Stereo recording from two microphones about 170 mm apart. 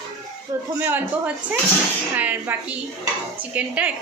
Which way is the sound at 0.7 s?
10° right (ahead or behind).